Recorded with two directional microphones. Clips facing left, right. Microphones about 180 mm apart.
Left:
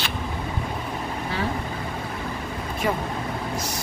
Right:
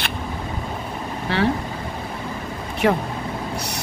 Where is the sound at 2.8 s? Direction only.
65° right (ahead or behind).